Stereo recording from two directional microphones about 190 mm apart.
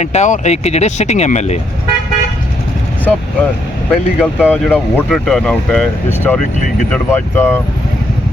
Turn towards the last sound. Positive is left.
turn(degrees=10)  # may be behind; listen again after turning